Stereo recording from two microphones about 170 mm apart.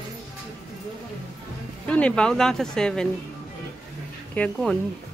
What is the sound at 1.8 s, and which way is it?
Speech, 5° left (ahead or behind).